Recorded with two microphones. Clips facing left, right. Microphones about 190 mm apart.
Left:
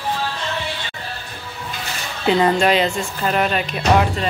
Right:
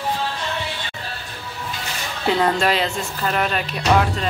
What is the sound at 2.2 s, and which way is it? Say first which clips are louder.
Speech: left 3 dB; 5° left (ahead or behind).